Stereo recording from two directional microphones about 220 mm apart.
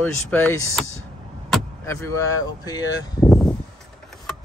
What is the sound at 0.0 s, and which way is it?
Speech, 10° left (ahead or behind).